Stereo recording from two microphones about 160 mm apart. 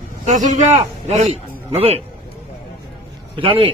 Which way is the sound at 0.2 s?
50° right (ahead or behind).